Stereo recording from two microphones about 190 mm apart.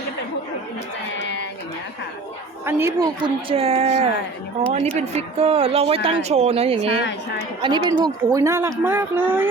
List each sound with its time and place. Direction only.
2.6 s speech: 10° right (ahead or behind)
3.2 s speech: 30° right (ahead or behind); by 9.5 s 10° right (ahead or behind)